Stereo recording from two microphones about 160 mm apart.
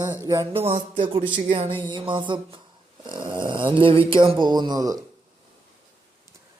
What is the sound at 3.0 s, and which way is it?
Snoring, 30° right (ahead or behind).